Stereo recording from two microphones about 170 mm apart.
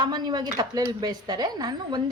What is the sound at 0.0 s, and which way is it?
Speech, 25° right (ahead or behind).